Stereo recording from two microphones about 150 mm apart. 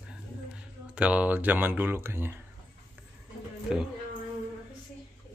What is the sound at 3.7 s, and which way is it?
Speech, 5° right (ahead or behind).